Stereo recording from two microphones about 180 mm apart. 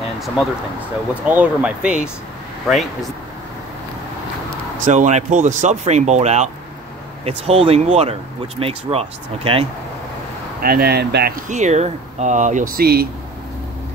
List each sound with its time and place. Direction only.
1.2 s speech: 10° right (ahead or behind)
4.8 s speech: 40° right (ahead or behind)
10.6 s speech: 60° right (ahead or behind)